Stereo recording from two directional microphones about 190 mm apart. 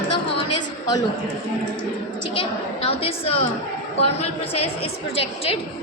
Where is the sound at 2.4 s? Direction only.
30° left (ahead or behind).